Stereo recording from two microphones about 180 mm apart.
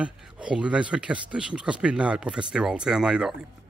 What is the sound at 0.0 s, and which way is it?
Speech, 5° right (ahead or behind).